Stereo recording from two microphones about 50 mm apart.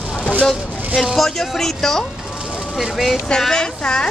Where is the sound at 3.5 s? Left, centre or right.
Centre.